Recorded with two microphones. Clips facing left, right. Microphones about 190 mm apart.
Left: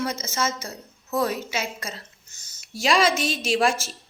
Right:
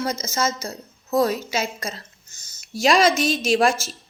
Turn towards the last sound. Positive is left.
turn(degrees=-40)  # may be behind; listen again after turning